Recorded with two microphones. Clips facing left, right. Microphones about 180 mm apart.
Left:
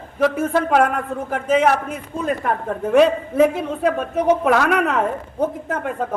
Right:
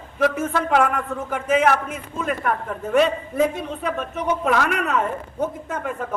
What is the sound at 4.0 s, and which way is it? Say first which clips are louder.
A man's voice: left 6 dB; 35° left (ahead or behind).